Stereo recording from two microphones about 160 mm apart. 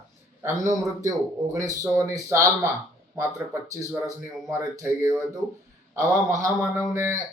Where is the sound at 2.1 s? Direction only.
20° right (ahead or behind).